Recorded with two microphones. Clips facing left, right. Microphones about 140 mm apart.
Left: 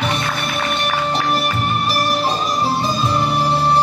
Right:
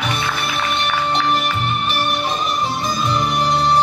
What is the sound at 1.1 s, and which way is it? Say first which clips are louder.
Music: even; 40° left (ahead or behind).